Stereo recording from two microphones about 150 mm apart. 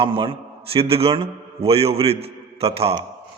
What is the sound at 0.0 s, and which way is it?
A man's voice, 35° right (ahead or behind).